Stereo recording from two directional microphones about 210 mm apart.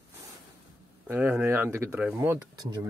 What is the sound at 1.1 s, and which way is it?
Speech, 10° right (ahead or behind).